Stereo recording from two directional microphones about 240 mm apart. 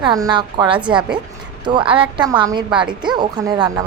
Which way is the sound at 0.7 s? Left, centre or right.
Centre.